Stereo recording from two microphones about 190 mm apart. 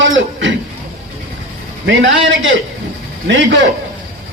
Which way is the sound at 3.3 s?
70° right (ahead or behind).